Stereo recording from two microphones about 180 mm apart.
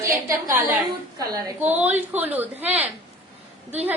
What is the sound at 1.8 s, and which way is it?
A woman's voice, 10° right (ahead or behind).